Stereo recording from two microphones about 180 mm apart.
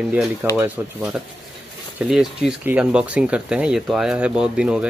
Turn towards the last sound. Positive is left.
turn(degrees=-5)  # may be behind; listen again after turning